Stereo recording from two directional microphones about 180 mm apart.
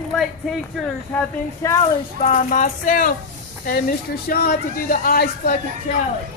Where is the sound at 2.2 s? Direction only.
40° left (ahead or behind).